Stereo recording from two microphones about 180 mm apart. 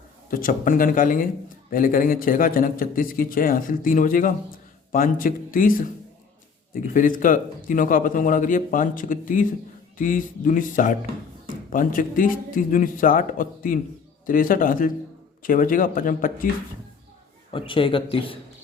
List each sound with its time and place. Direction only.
0.3 s a man's voice: 50° left (ahead or behind)
6.9 s a man's voice: 45° left (ahead or behind)
17.5 s speech: 30° left (ahead or behind)